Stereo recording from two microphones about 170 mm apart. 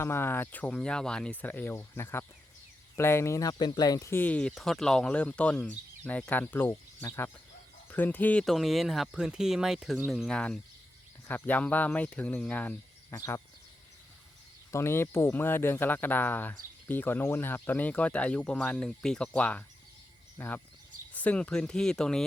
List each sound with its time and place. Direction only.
0.0 s speech: 15° left (ahead or behind)
14.7 s speech: 15° left (ahead or behind)